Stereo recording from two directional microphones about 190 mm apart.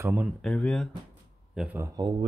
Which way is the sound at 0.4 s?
5° left (ahead or behind).